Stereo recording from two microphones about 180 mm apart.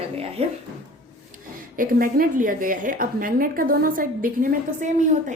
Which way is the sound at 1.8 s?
50° right (ahead or behind).